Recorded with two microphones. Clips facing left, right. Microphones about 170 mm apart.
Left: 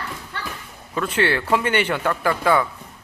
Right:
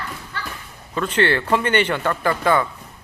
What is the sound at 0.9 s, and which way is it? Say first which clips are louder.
Speech: right 2 dB; 10° left (ahead or behind).